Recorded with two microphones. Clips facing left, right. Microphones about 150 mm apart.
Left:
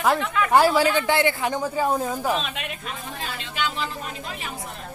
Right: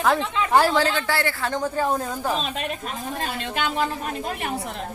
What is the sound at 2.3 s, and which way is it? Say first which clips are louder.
A woman's voice: right 2 dB; 35° right (ahead or behind).